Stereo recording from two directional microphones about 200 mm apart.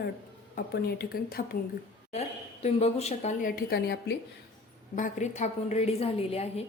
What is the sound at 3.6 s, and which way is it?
Speech, 50° left (ahead or behind).